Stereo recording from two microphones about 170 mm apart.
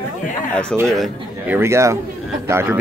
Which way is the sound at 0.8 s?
Centre (ahead or behind).